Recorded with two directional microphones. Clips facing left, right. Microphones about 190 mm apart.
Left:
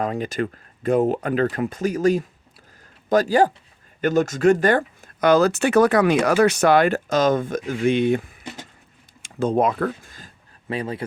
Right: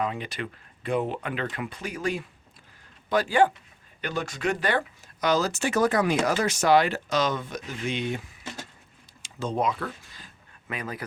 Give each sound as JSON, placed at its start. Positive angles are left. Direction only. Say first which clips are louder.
{"t": 0.0, "sound": "speech", "louder": "left 6 dB", "side_deg": 45}
{"t": 10.7, "sound": "speech", "louder": "left 8 dB", "side_deg": 30}